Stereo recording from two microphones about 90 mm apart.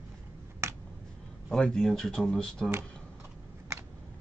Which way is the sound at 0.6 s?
30° right (ahead or behind).